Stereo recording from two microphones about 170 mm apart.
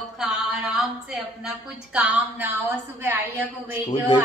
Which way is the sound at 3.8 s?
25° left (ahead or behind).